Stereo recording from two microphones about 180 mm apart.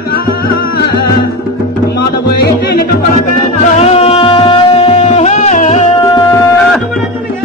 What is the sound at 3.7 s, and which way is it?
Music, 35° left (ahead or behind).